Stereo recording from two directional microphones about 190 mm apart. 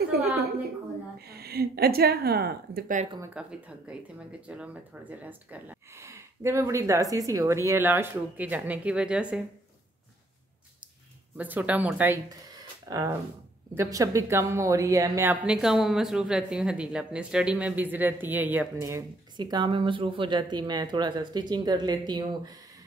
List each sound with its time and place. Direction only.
1.2 s a woman's voice: 55° right (ahead or behind)
3.3 s a woman's voice: 5° right (ahead or behind)
11.3 s a woman's voice: 10° right (ahead or behind)